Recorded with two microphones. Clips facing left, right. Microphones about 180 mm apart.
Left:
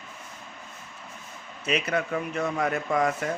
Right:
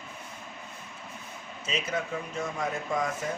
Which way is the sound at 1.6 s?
65° left (ahead or behind).